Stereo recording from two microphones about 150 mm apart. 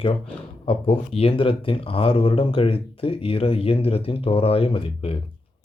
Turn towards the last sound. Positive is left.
turn(degrees=40)  # may be behind; listen again after turning